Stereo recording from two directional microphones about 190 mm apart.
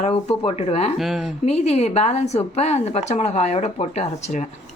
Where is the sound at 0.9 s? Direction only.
Centre (ahead or behind).